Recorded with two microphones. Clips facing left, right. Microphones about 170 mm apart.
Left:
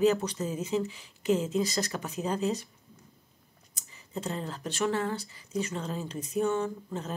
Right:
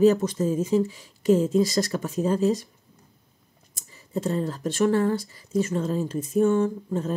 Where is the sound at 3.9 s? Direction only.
45° right (ahead or behind).